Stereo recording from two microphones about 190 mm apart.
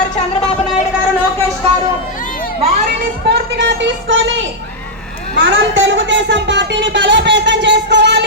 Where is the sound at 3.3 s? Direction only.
65° right (ahead or behind).